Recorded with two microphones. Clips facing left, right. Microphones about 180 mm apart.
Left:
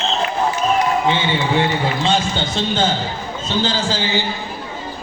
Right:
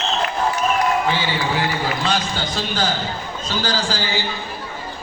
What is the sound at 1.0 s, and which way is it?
A man's voice, 25° left (ahead or behind).